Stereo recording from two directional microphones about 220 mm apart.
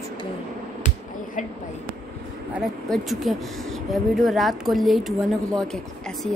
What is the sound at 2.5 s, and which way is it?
Speech, centre (ahead or behind).